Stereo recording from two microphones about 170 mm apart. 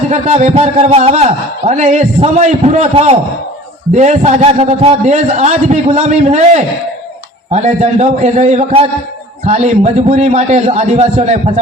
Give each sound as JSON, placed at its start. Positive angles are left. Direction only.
{"t": 0.1, "sound": "a man's voice", "side_deg": -40}